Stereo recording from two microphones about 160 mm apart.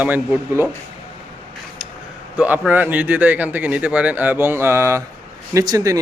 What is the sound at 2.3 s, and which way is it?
Speech, 10° right (ahead or behind).